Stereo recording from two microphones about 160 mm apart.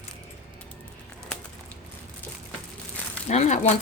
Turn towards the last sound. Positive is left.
turn(degrees=45)  # may be behind; listen again after turning